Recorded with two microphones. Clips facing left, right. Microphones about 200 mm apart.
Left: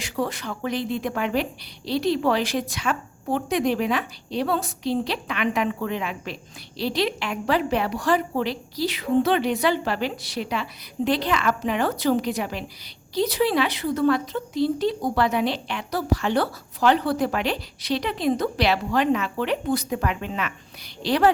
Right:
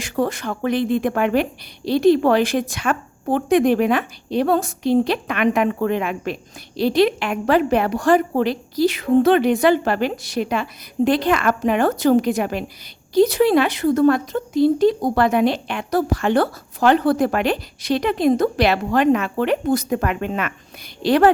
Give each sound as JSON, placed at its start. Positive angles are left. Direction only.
{"t": 0.0, "sound": "speech", "side_deg": -50}